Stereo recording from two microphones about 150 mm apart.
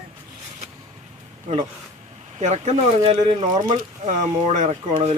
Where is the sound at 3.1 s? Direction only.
35° right (ahead or behind).